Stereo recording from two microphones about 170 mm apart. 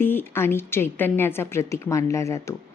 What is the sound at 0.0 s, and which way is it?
A woman's voice, 10° left (ahead or behind).